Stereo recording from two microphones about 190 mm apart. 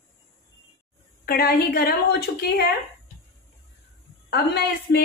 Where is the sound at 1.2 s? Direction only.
55° left (ahead or behind).